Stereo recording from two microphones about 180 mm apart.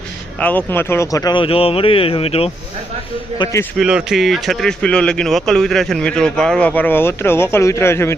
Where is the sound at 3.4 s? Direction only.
15° left (ahead or behind).